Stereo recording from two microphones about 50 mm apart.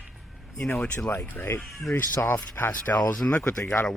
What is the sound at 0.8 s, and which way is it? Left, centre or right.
Speech, centre.